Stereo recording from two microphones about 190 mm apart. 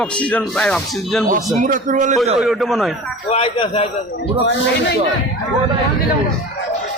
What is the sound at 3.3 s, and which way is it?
Speech, 30° left (ahead or behind).